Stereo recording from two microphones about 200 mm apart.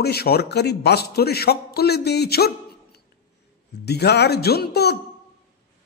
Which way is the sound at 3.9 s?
55° left (ahead or behind).